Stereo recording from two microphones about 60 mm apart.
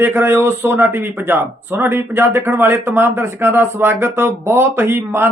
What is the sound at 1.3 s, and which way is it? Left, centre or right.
Speech, right.